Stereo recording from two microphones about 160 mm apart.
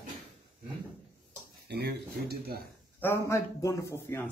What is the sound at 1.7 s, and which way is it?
Speech, 90° right.